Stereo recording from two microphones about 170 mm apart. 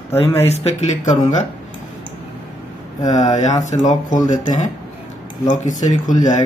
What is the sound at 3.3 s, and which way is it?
Speech, 45° left (ahead or behind).